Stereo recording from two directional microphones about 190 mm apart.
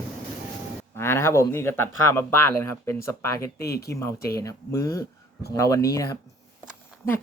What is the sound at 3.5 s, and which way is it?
Speech, 55° left (ahead or behind).